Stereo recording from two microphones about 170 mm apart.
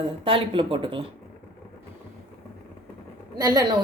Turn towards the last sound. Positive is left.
turn(degrees=-25)  # may be behind; listen again after turning